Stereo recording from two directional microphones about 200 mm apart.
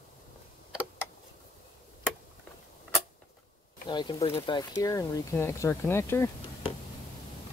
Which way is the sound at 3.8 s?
20° left (ahead or behind).